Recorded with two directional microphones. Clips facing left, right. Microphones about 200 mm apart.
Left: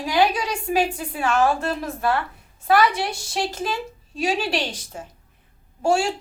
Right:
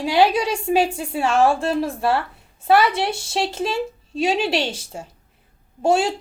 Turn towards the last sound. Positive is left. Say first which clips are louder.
# right 2 dB
turn(degrees=-20)  # may be behind; listen again after turning